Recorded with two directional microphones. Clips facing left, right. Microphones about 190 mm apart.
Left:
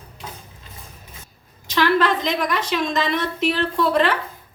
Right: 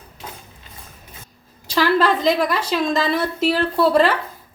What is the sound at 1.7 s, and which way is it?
A woman's voice, 35° right (ahead or behind).